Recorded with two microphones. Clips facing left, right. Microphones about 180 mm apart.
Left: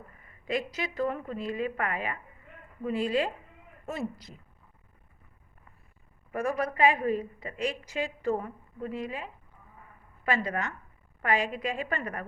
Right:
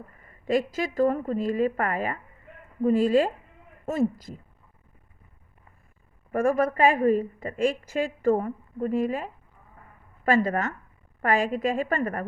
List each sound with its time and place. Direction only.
0.4 s a woman's voice: 45° right (ahead or behind)
6.3 s a woman's voice: 50° right (ahead or behind)